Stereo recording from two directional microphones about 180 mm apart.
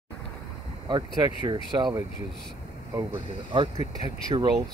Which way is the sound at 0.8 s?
25° right (ahead or behind).